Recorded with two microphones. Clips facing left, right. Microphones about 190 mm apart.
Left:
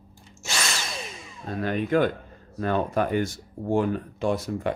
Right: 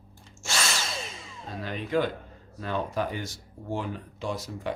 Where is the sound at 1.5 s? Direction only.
55° left (ahead or behind).